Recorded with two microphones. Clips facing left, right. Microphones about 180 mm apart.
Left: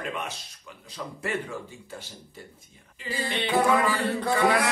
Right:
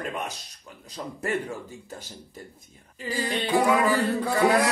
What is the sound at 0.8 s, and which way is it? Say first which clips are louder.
Music: right 2 dB; 40° right (ahead or behind).